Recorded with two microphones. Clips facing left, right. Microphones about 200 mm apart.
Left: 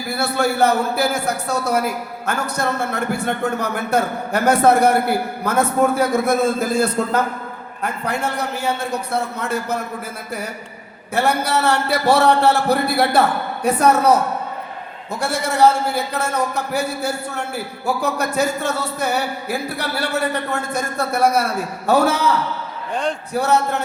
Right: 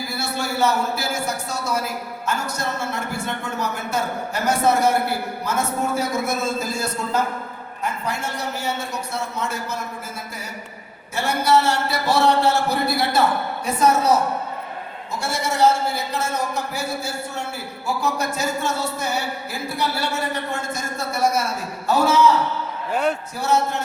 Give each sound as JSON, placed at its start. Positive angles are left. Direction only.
{"t": 0.1, "sound": "a man's voice", "side_deg": 60}
{"t": 11.1, "sound": "a man's voice", "side_deg": 60}
{"t": 15.2, "sound": "a man's voice", "side_deg": 60}
{"t": 23.3, "sound": "a man's voice", "side_deg": 60}